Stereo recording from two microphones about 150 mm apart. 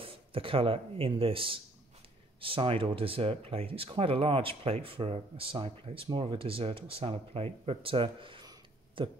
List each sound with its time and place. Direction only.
0.0 s speech: 35° right (ahead or behind)